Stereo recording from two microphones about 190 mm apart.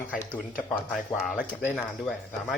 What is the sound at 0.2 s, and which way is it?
Speech, 10° left (ahead or behind).